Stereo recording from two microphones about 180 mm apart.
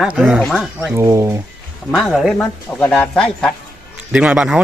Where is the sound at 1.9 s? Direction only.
Centre (ahead or behind).